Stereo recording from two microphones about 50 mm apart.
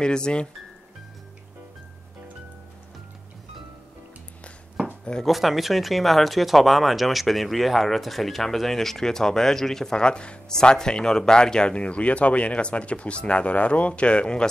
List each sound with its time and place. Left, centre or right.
0.0 s speech: centre
5.2 s speech: centre